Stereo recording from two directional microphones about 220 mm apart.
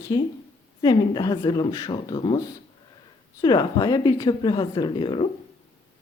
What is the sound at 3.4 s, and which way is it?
Speech, 20° left (ahead or behind).